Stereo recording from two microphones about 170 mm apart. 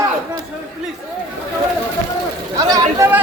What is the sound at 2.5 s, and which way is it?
Speech, 20° right (ahead or behind).